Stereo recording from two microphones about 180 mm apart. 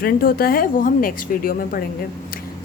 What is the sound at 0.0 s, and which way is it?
A woman's voice, 55° left (ahead or behind).